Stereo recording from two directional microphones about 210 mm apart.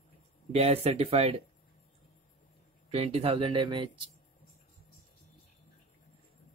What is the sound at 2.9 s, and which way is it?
Speech, 30° right (ahead or behind).